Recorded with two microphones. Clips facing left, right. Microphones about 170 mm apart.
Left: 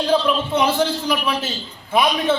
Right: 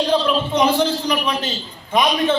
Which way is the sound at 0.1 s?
5° left (ahead or behind).